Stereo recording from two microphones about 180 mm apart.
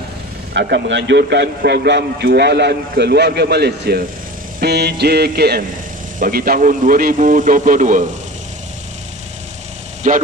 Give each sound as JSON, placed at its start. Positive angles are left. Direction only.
{"t": 0.5, "sound": "a man's voice", "side_deg": -65}
{"t": 10.0, "sound": "a man's voice", "side_deg": -45}